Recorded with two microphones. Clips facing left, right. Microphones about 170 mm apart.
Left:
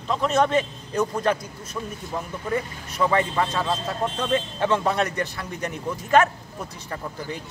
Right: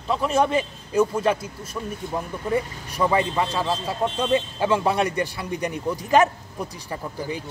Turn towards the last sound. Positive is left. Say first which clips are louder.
# right 2 dB
turn(degrees=-10)  # may be behind; listen again after turning